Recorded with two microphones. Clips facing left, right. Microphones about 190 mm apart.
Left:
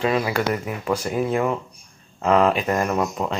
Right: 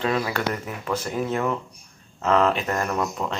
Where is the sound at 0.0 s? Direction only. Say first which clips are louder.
Left 3 dB; 10° left (ahead or behind).